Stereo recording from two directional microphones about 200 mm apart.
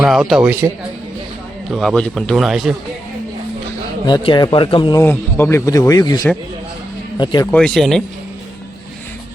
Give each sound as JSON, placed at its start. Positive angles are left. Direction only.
{"t": 0.0, "sound": "a man's voice", "side_deg": 0}
{"t": 1.7, "sound": "a man's voice", "side_deg": 0}
{"t": 4.0, "sound": "speech", "side_deg": 25}
{"t": 5.0, "sound": "speech", "side_deg": 10}
{"t": 7.5, "sound": "a man's voice", "side_deg": 5}